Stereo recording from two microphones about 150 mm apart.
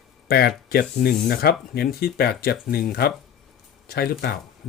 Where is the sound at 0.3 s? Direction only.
90° left.